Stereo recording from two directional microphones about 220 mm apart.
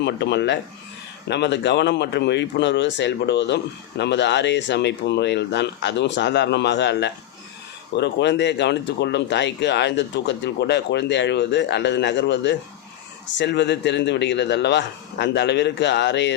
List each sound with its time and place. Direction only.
0.0 s speech: 50° left (ahead or behind)